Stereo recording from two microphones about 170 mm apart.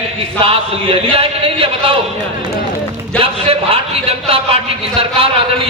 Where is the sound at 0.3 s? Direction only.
35° right (ahead or behind).